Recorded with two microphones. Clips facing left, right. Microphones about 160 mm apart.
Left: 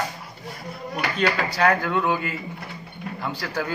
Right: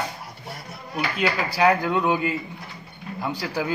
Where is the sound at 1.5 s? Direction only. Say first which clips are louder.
Right 1 dB; 10° right (ahead or behind).